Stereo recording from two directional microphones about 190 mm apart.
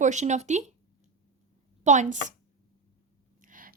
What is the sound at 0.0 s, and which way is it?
Speech, 40° right (ahead or behind).